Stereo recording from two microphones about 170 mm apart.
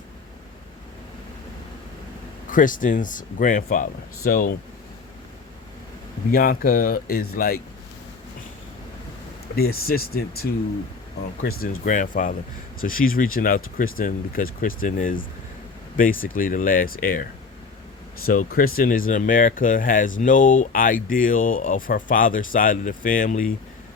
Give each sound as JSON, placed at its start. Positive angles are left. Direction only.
{"t": 2.5, "sound": "speech", "side_deg": 50}
{"t": 6.3, "sound": "speech", "side_deg": 60}
{"t": 9.6, "sound": "speech", "side_deg": 60}
{"t": 11.4, "sound": "speech", "side_deg": 60}
{"t": 18.3, "sound": "speech", "side_deg": 55}